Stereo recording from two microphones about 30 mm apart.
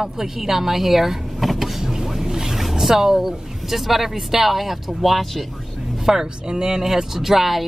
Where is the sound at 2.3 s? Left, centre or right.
Right.